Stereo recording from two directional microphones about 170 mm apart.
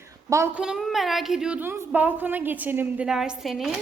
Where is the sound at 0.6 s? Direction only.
5° right (ahead or behind).